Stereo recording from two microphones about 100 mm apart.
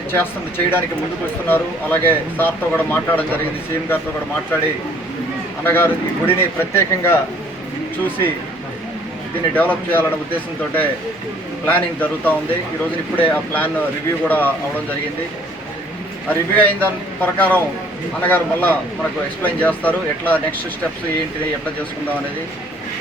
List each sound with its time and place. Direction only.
0.1 s speech: 20° left (ahead or behind)
5.6 s speech: 20° left (ahead or behind)
9.6 s speech: 20° left (ahead or behind)
16.3 s speech: 15° left (ahead or behind)